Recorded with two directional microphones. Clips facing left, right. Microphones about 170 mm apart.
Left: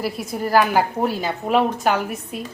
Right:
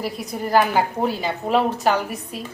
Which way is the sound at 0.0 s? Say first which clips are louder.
Left 2 dB; 5° left (ahead or behind).